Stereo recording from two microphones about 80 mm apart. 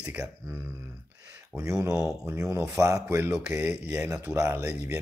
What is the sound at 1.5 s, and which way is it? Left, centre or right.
Speech, right.